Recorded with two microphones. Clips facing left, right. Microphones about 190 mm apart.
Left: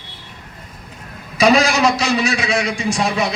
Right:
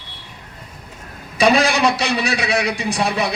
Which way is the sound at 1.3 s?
60° right (ahead or behind).